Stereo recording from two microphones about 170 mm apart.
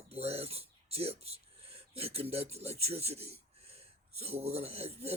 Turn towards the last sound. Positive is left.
turn(degrees=-35)  # may be behind; listen again after turning